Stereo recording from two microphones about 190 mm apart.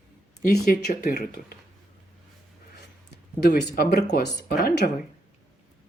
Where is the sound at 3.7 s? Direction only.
50° left (ahead or behind).